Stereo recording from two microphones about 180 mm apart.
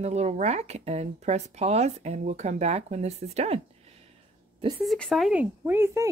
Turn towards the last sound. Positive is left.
turn(degrees=-15)  # may be behind; listen again after turning